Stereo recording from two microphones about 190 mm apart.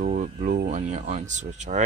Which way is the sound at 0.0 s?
40° right (ahead or behind).